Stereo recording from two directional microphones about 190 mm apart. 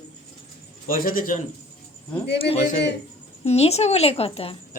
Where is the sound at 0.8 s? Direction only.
50° left (ahead or behind).